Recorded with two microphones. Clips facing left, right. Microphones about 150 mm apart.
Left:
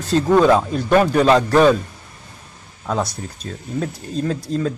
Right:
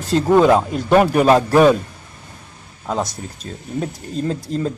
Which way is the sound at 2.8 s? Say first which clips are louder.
Even; 20° right (ahead or behind).